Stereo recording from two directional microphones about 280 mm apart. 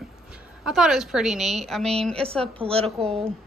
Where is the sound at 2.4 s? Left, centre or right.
Right.